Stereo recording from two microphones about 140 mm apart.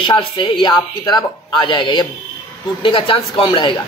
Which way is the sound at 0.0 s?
35° left (ahead or behind).